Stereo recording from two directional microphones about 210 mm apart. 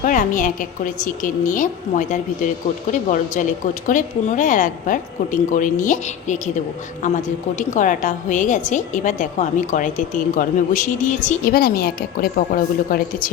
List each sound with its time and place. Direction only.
0.0 s a woman's voice: 40° left (ahead or behind)